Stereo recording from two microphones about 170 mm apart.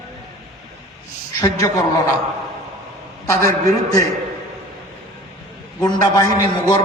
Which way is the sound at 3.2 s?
20° left (ahead or behind).